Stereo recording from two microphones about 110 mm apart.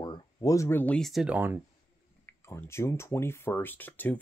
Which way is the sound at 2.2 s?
20° left (ahead or behind).